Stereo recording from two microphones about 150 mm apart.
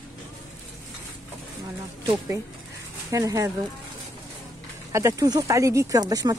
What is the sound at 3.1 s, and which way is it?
Speech, 20° right (ahead or behind).